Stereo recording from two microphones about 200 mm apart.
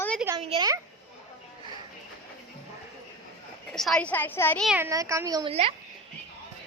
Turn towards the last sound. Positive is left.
turn(degrees=-30)  # may be behind; listen again after turning